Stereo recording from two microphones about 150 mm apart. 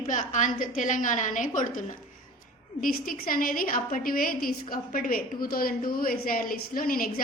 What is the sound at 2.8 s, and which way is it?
A woman's voice, 70° left (ahead or behind).